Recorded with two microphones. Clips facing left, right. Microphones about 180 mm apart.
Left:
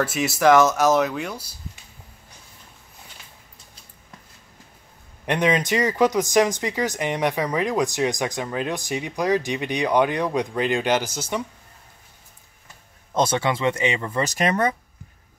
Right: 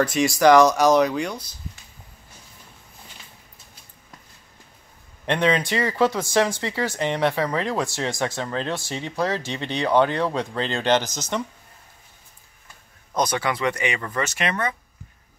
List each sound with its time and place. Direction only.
0.0 s speech: 5° left (ahead or behind)
5.2 s speech: 15° left (ahead or behind)
13.1 s speech: 25° left (ahead or behind)
14.1 s speech: 35° left (ahead or behind)